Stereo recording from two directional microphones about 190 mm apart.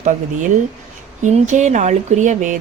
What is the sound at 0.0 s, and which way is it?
Speech, 40° right (ahead or behind).